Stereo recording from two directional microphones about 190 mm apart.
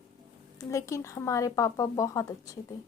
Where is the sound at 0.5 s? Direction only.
15° left (ahead or behind).